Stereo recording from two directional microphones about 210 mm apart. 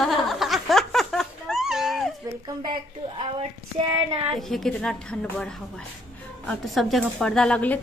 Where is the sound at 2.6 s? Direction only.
20° right (ahead or behind).